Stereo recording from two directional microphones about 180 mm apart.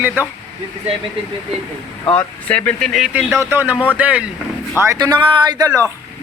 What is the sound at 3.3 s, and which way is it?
Speech, 15° right (ahead or behind).